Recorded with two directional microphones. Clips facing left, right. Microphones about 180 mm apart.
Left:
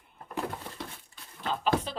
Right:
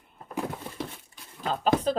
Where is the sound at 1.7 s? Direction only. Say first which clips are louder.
Right 4 dB; 20° right (ahead or behind).